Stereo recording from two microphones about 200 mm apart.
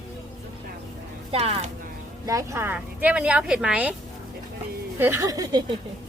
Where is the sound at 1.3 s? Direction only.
30° right (ahead or behind).